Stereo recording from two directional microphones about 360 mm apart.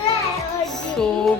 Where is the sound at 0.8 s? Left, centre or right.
Centre.